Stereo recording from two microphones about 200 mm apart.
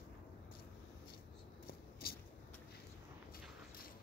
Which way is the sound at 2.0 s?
50° left (ahead or behind).